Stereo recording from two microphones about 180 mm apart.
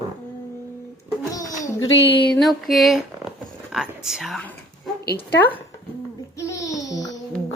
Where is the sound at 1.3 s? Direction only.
20° left (ahead or behind).